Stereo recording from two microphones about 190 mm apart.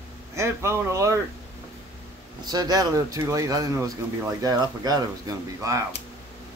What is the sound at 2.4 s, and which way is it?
Speech, 20° right (ahead or behind).